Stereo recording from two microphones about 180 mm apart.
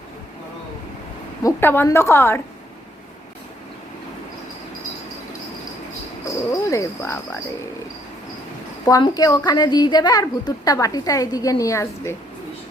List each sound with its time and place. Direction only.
1.5 s a woman's voice: 10° left (ahead or behind)
6.2 s speech: 20° left (ahead or behind)
8.8 s a woman's voice: 25° left (ahead or behind)